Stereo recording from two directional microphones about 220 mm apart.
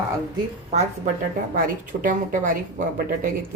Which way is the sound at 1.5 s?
40° right (ahead or behind).